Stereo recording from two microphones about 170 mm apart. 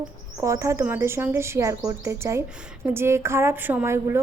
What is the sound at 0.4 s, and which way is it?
A woman's voice, 15° right (ahead or behind).